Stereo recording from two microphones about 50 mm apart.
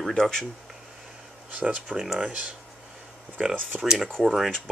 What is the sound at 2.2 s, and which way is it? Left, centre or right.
Speech, right.